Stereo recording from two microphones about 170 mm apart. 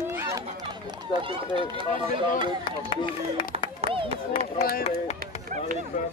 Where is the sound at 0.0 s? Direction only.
15° right (ahead or behind).